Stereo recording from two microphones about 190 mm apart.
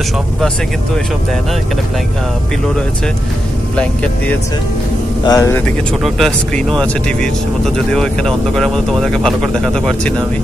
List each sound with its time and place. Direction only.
3.7 s speech: 5° left (ahead or behind)
5.2 s speech: 20° left (ahead or behind)
6.0 s speech: centre (ahead or behind)